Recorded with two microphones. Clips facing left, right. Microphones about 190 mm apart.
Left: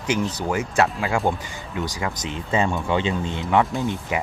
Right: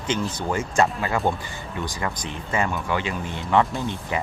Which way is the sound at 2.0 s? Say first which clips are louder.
Left 1 dB; 20° left (ahead or behind).